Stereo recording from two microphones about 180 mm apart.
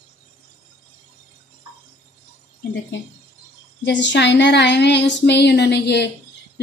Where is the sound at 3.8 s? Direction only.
80° left.